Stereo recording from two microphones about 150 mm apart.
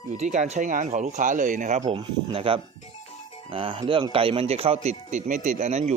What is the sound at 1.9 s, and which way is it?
Speech, 40° right (ahead or behind).